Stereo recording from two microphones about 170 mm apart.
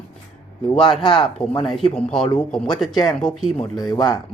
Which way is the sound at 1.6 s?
Centre (ahead or behind).